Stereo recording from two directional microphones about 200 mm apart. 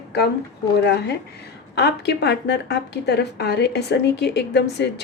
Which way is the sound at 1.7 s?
55° left (ahead or behind).